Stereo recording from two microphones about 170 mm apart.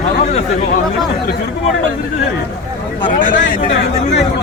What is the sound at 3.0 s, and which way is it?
Speech, 50° left (ahead or behind).